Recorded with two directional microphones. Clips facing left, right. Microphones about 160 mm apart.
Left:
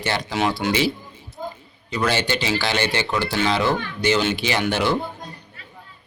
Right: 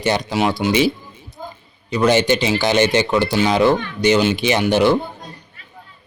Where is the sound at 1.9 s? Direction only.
20° right (ahead or behind).